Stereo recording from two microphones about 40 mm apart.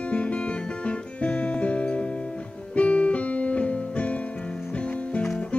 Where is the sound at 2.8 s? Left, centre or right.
Left.